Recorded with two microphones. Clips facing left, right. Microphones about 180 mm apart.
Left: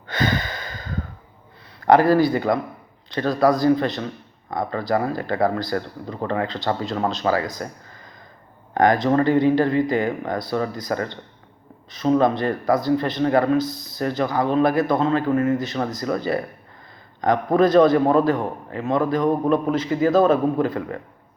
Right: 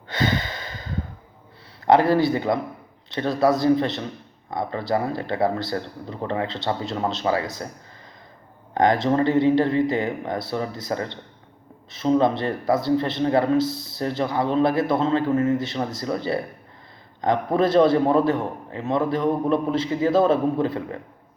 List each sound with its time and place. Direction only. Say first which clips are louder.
0.1 s a sound: left 1 dB; 25° right (ahead or behind)
1.8 s a man's voice: left 2 dB; 25° right (ahead or behind)
8.7 s a man's voice: left 2 dB; 25° right (ahead or behind)